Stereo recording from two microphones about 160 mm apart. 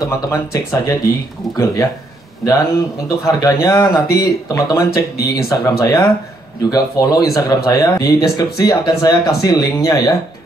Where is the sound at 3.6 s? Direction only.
20° left (ahead or behind).